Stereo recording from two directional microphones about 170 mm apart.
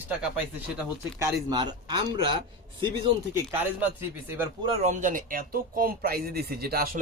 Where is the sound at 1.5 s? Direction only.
25° right (ahead or behind).